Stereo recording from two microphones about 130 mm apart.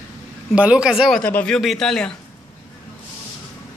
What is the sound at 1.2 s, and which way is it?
Speech, 10° left (ahead or behind).